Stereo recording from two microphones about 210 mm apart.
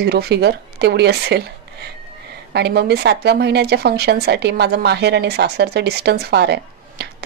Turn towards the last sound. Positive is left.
turn(degrees=-50)  # may be behind; listen again after turning